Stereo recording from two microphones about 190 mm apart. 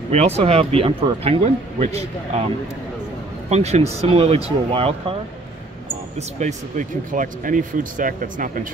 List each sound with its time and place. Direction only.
0.1 s speech: 35° right (ahead or behind)
3.4 s speech: 35° right (ahead or behind)
6.1 s speech: 40° right (ahead or behind)